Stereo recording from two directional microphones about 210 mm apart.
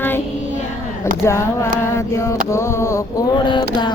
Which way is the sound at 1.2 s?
15° left (ahead or behind).